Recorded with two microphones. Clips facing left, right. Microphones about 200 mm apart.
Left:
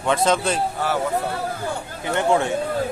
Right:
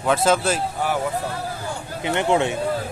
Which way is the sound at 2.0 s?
20° right (ahead or behind).